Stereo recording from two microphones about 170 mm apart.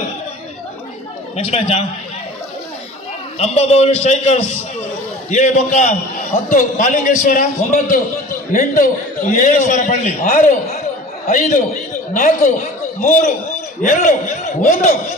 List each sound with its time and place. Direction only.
1.3 s a man's voice: 35° left (ahead or behind)
3.3 s a man's voice: 40° left (ahead or behind)
14.6 s a man's voice: 50° left (ahead or behind)